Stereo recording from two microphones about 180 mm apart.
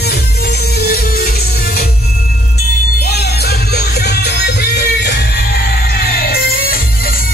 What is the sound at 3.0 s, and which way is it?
Music, 65° left (ahead or behind).